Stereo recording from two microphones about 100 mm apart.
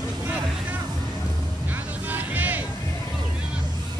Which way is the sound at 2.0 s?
15° right (ahead or behind).